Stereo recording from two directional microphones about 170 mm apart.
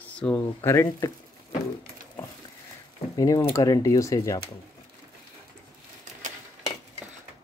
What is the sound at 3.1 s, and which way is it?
Speech, 20° left (ahead or behind).